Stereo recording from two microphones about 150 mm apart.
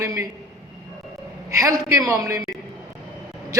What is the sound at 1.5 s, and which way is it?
A man's voice, 20° right (ahead or behind).